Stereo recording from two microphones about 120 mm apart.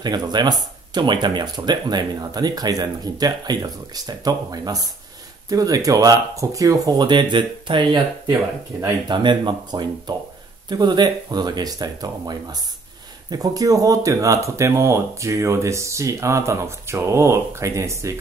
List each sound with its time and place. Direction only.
0.0 s speech: 35° right (ahead or behind)